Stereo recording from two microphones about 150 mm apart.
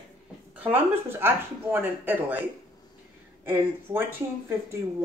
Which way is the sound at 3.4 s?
15° right (ahead or behind).